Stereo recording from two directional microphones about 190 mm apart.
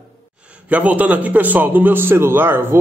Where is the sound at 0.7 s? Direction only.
10° right (ahead or behind).